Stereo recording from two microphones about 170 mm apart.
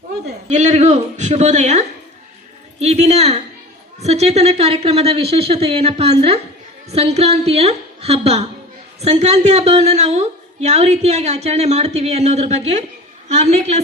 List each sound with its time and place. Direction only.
0.4 s a woman's voice: 45° right (ahead or behind)